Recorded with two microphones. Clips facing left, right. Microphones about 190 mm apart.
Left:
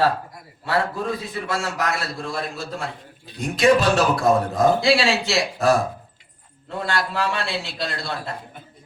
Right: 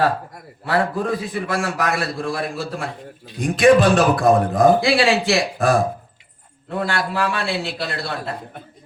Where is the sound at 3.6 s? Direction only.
55° right (ahead or behind).